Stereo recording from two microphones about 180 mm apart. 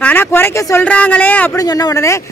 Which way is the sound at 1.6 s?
20° left (ahead or behind).